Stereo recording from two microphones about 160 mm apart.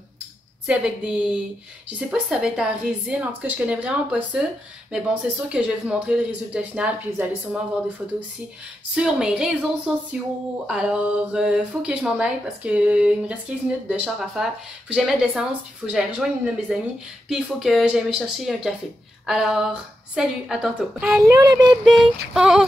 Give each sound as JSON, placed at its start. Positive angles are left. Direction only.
{"t": 0.7, "sound": "speech", "side_deg": -5}
{"t": 8.9, "sound": "speech", "side_deg": -5}
{"t": 21.2, "sound": "speech", "side_deg": -20}
{"t": 21.6, "sound": "speech", "side_deg": -5}